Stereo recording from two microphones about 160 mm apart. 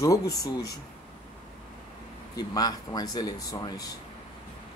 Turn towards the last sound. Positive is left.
turn(degrees=25)  # may be behind; listen again after turning